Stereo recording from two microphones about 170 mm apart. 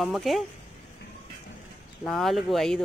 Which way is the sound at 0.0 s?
Centre (ahead or behind).